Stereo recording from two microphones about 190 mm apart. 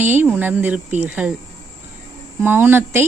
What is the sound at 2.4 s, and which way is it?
Speech, 10° right (ahead or behind).